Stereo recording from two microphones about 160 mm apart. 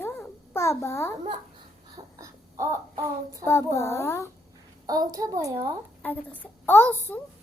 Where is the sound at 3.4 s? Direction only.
15° left (ahead or behind).